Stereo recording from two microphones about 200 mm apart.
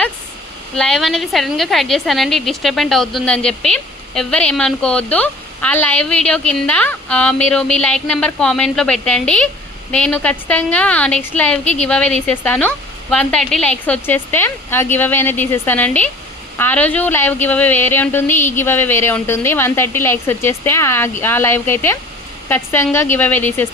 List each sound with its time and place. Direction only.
0.8 s a woman's voice: centre (ahead or behind)
11.6 s a woman's voice: 35° left (ahead or behind)
11.9 s a woman's voice: 5° left (ahead or behind)